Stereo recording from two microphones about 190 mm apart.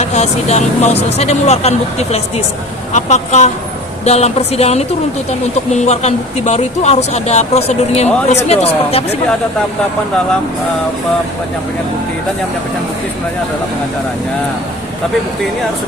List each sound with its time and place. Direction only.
0.0 s speech: 35° left (ahead or behind)